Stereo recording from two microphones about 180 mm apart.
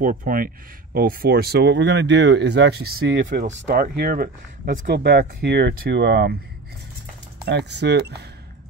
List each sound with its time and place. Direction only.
0.0 s speech: 50° right (ahead or behind)
3.5 s speech: 75° right (ahead or behind)
3.8 s speech: 55° right (ahead or behind)
4.7 s speech: 65° right (ahead or behind)
7.4 s speech: 70° right (ahead or behind)